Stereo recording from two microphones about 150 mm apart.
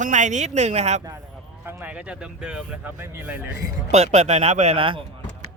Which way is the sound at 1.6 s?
10° right (ahead or behind).